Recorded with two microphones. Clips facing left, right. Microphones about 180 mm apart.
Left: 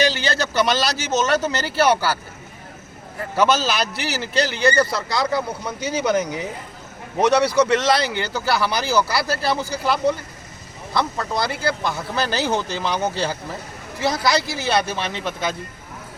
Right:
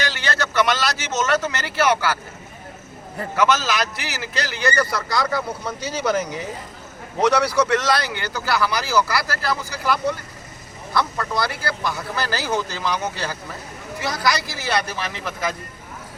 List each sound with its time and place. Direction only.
0.1 s a man's voice: 30° left (ahead or behind)
3.3 s a man's voice: 30° left (ahead or behind)